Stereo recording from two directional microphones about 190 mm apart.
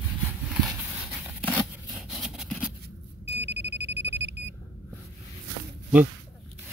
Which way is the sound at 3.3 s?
65° right (ahead or behind).